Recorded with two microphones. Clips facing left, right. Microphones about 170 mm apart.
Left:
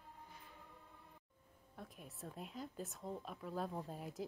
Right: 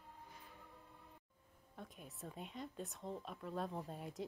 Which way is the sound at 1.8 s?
Centre (ahead or behind).